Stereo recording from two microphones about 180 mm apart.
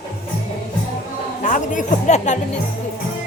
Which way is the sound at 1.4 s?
45° left (ahead or behind).